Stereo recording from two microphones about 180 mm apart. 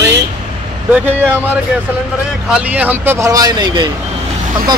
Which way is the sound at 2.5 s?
10° right (ahead or behind).